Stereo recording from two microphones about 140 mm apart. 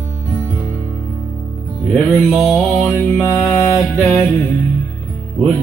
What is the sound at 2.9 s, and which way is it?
Music, 15° left (ahead or behind).